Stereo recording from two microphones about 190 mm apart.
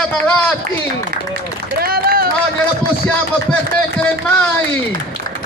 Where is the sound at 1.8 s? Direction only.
50° right (ahead or behind).